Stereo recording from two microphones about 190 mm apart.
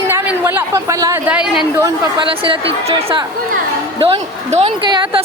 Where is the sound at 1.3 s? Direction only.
5° right (ahead or behind).